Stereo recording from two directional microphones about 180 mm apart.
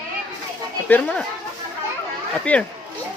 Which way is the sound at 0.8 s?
10° left (ahead or behind).